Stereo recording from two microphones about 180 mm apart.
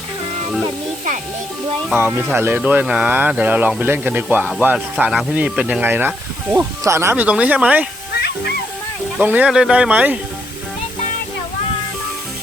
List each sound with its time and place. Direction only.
2.0 s speech: 10° right (ahead or behind)
9.1 s speech: 10° right (ahead or behind)